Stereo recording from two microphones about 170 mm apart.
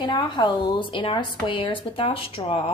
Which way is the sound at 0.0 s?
25° left (ahead or behind).